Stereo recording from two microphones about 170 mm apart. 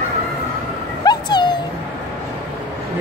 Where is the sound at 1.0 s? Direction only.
25° left (ahead or behind).